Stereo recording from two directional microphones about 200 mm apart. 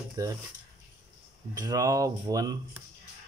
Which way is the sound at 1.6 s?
15° right (ahead or behind).